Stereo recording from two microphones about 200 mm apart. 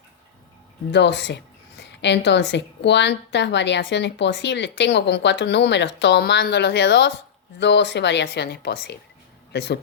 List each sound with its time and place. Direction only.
0.9 s a woman's voice: 60° left (ahead or behind)